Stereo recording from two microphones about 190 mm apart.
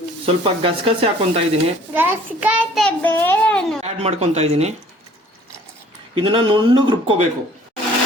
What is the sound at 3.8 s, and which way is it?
Speech, 35° right (ahead or behind).